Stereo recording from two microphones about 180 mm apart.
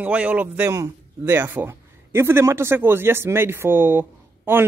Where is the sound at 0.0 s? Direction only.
10° right (ahead or behind).